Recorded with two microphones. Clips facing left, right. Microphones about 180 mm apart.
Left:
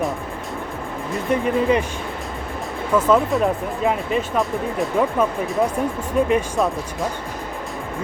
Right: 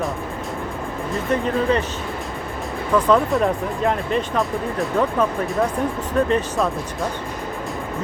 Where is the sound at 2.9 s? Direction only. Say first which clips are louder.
Even; 5° left (ahead or behind).